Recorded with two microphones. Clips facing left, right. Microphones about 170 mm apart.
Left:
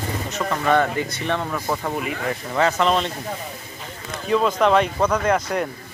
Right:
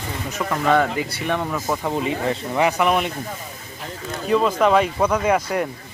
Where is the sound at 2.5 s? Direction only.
15° right (ahead or behind).